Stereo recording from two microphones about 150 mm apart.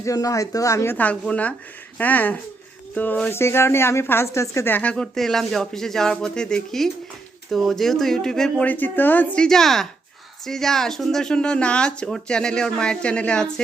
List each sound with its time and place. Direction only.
0.0 s a woman's voice: 20° left (ahead or behind); by 13.5 s 5° left (ahead or behind)